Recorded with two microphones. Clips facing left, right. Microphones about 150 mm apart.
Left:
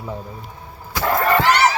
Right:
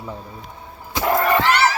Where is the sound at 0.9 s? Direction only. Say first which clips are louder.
Even; 20° right (ahead or behind).